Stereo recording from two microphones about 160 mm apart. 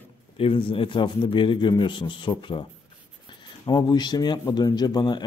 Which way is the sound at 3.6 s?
25° left (ahead or behind).